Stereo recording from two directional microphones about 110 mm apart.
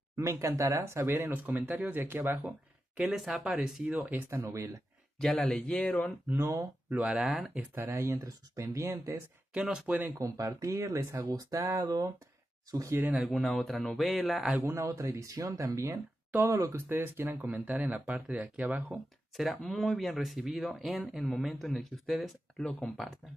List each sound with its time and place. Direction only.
0.1 s speech: 25° right (ahead or behind)
3.0 s speech: 5° right (ahead or behind); by 4.6 s 25° right (ahead or behind)
5.2 s speech: 5° left (ahead or behind)
6.2 s speech: 25° right (ahead or behind)
6.9 s speech: 10° right (ahead or behind)
7.7 s speech: 25° right (ahead or behind)
9.5 s speech: 10° right (ahead or behind)
10.1 s speech: 30° right (ahead or behind)
13.1 s speech: centre (ahead or behind)
14.7 s speech: 25° right (ahead or behind)
16.9 s speech: 20° right (ahead or behind)
19.3 s speech: centre (ahead or behind)